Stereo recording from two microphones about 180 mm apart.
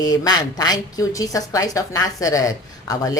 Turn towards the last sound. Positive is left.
turn(degrees=20)  # may be behind; listen again after turning